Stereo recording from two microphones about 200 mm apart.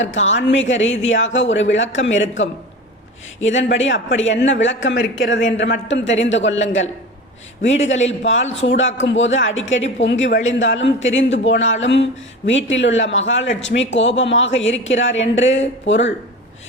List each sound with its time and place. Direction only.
0.0 s a woman's voice: 70° left (ahead or behind)
3.5 s a woman's voice: 70° left (ahead or behind)